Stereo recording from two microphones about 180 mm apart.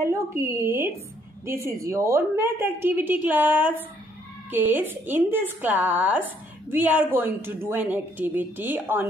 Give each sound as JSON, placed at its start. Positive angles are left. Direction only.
{"t": 0.0, "sound": "a woman's voice", "side_deg": -15}